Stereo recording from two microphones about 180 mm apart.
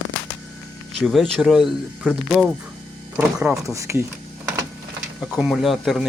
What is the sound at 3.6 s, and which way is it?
Speech, 15° right (ahead or behind).